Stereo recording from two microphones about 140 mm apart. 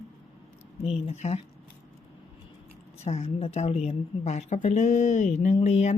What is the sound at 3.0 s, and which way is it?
A woman's voice, 50° left (ahead or behind).